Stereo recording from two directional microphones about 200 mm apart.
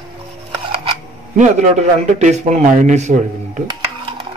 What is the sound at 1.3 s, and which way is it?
A man's voice, 35° right (ahead or behind).